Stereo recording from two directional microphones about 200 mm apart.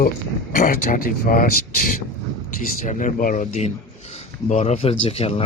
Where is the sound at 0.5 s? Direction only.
40° left (ahead or behind).